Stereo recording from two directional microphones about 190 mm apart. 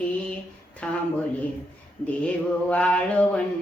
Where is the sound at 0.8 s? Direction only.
5° left (ahead or behind).